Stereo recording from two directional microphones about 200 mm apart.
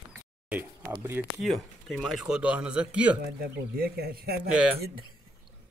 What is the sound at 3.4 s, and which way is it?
Speech, 50° right (ahead or behind).